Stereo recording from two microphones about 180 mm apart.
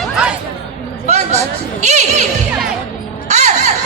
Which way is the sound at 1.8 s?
40° right (ahead or behind).